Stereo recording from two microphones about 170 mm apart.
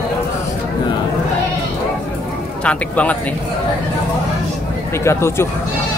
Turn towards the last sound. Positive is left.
turn(degrees=15)  # may be behind; listen again after turning